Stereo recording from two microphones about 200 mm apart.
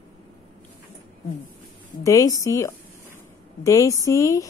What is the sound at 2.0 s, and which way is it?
A woman's voice, 15° left (ahead or behind).